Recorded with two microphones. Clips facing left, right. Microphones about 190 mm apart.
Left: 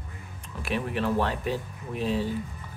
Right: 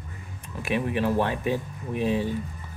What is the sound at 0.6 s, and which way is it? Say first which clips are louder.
Speech: right 3 dB; 15° right (ahead or behind).